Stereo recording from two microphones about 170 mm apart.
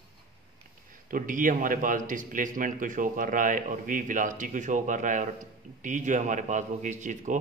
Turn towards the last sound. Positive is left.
turn(degrees=-45)  # may be behind; listen again after turning